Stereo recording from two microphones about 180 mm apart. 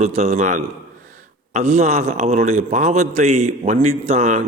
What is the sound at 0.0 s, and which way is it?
Speech, 35° right (ahead or behind).